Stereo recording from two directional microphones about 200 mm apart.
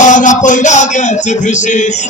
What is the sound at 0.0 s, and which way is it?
Music, 40° left (ahead or behind).